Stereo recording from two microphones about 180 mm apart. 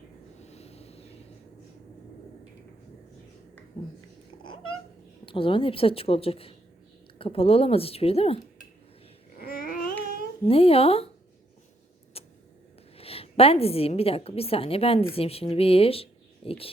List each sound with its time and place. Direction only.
0.3 s a sound: 35° left (ahead or behind)
3.8 s a woman's voice: 35° left (ahead or behind)
5.2 s a woman's voice: 30° left (ahead or behind)
9.4 s babbling: 55° left (ahead or behind)
10.5 s a woman's voice: 30° left (ahead or behind)
12.1 s a sound: 35° left (ahead or behind)
13.0 s a woman's voice: 35° left (ahead or behind)